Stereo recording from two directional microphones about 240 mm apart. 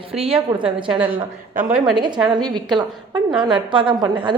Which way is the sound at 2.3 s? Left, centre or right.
Centre.